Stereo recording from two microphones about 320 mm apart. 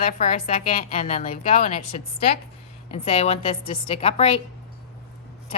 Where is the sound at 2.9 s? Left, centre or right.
Centre.